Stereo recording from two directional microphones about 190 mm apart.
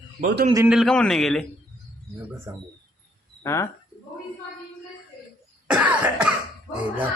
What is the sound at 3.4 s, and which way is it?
Speech, 15° left (ahead or behind).